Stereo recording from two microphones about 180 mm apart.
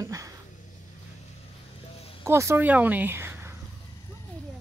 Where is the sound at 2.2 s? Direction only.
15° right (ahead or behind).